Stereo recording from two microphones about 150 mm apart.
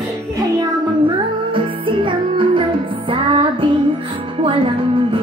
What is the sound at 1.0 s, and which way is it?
Music, 35° right (ahead or behind).